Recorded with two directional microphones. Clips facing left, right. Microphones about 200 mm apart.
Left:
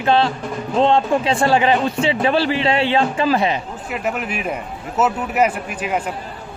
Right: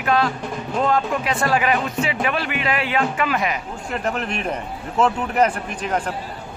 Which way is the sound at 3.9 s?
5° left (ahead or behind).